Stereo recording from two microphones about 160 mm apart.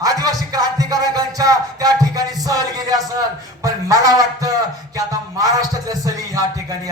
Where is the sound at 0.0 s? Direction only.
25° right (ahead or behind).